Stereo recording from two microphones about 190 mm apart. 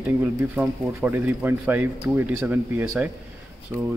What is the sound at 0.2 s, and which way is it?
Speech, 10° right (ahead or behind).